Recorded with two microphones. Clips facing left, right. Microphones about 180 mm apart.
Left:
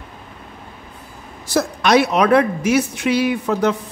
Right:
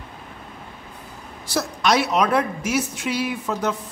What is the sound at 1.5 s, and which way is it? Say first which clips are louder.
A woman's voice: left 5 dB; 55° left (ahead or behind).